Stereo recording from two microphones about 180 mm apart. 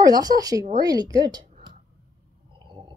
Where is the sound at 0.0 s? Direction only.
20° right (ahead or behind).